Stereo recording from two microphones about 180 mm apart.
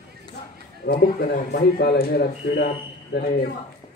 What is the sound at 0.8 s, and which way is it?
Speech, 75° left (ahead or behind).